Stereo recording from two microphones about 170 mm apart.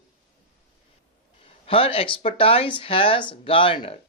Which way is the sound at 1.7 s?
35° left (ahead or behind).